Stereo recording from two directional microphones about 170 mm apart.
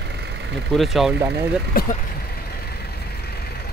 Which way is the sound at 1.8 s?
60° left (ahead or behind).